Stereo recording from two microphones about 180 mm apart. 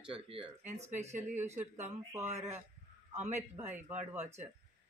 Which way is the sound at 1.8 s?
15° right (ahead or behind).